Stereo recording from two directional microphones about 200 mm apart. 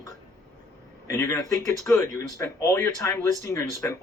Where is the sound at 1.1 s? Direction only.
10° left (ahead or behind).